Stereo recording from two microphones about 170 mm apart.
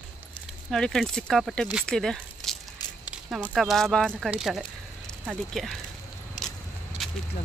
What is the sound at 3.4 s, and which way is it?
Speech, centre (ahead or behind).